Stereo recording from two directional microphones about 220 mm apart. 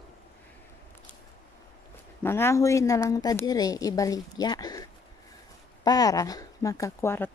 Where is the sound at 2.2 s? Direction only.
10° left (ahead or behind).